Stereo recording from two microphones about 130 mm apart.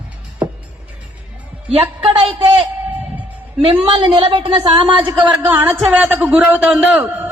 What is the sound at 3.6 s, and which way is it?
A woman's voice, 45° right (ahead or behind).